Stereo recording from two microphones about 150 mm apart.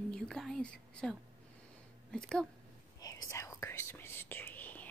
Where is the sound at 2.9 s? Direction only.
25° left (ahead or behind).